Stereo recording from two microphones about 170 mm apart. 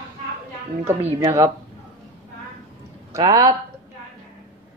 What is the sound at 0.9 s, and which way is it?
Speech, 15° right (ahead or behind).